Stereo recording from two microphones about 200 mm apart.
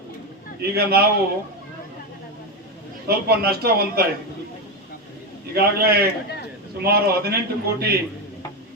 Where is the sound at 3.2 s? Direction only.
50° right (ahead or behind).